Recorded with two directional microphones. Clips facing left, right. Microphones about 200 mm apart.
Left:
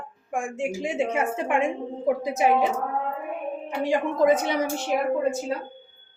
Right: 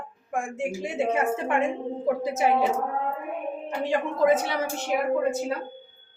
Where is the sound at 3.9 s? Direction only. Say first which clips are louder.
Left 1 dB; 15° left (ahead or behind).